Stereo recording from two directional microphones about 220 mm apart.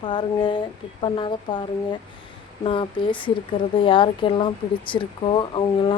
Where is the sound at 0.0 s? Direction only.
20° left (ahead or behind).